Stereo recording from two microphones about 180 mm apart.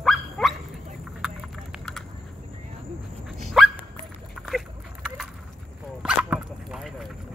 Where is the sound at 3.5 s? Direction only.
Centre (ahead or behind).